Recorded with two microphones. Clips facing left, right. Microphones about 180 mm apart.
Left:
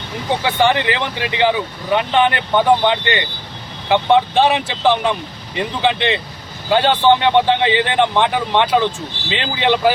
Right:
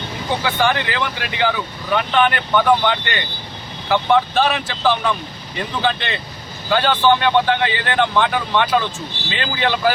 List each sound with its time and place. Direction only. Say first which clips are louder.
0.4 s speech: left 4 dB; 25° left (ahead or behind)